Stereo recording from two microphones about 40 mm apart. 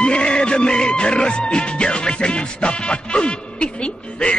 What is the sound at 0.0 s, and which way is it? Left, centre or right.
Music, left.